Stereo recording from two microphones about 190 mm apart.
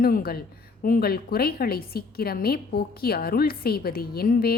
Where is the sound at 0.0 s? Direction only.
50° left (ahead or behind).